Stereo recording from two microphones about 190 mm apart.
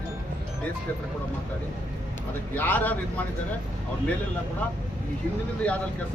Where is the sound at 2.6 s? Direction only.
10° left (ahead or behind).